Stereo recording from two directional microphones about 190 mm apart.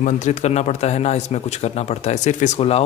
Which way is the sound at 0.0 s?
40° left (ahead or behind).